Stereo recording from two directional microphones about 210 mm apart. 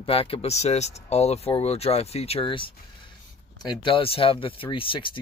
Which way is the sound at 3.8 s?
25° left (ahead or behind).